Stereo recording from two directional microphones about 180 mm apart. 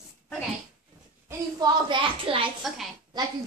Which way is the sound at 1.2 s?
25° right (ahead or behind).